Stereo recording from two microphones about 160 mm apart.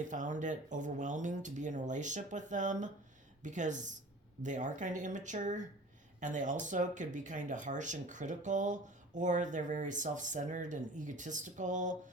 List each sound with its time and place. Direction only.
0.1 s speech: 50° right (ahead or behind)